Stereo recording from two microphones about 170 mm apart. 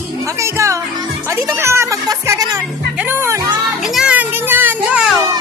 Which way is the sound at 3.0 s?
15° right (ahead or behind).